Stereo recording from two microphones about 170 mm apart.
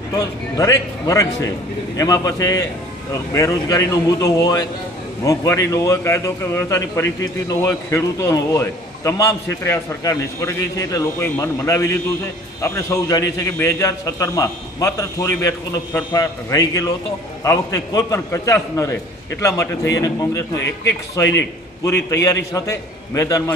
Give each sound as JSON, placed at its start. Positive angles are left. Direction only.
{"t": 0.1, "sound": "a man's voice", "side_deg": 20}